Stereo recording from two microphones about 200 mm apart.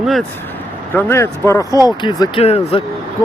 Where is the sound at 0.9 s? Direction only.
15° left (ahead or behind); by 2.8 s 30° left (ahead or behind).